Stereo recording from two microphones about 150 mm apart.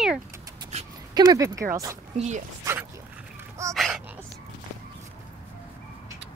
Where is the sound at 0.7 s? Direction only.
50° right (ahead or behind).